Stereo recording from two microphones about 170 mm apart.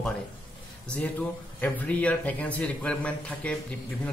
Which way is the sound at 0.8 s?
5° left (ahead or behind).